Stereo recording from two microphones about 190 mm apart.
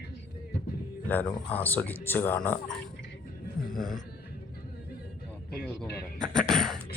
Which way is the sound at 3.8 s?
Centre (ahead or behind).